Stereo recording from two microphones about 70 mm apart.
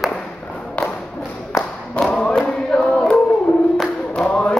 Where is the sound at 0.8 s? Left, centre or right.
Centre.